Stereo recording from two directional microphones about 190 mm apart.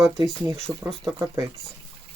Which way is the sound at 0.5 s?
Centre (ahead or behind).